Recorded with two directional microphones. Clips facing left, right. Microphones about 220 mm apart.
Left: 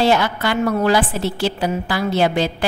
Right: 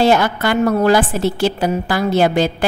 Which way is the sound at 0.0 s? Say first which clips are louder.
Right 3 dB; 45° right (ahead or behind).